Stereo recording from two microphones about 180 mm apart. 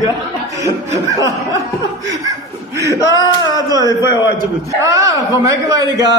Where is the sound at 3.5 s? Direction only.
20° right (ahead or behind).